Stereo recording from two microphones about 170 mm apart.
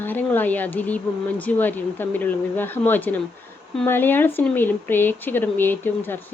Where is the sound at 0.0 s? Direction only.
10° left (ahead or behind).